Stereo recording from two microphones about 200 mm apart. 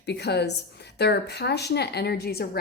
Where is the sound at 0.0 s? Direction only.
55° left (ahead or behind).